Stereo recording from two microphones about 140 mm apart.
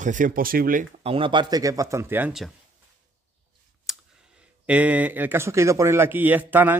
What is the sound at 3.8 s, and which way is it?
Speech, 5° right (ahead or behind).